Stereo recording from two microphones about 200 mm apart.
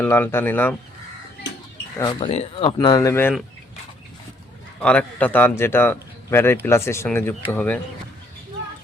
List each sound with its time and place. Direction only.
0.0 s speech: 10° left (ahead or behind)
2.0 s speech: 20° left (ahead or behind)
4.8 s speech: 5° left (ahead or behind)